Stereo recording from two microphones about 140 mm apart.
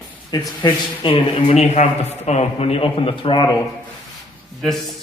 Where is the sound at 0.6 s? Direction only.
35° left (ahead or behind).